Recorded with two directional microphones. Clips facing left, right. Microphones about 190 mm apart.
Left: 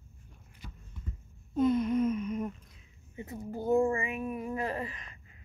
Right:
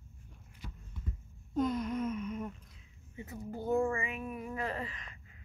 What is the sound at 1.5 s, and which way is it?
Gasp, 5° left (ahead or behind).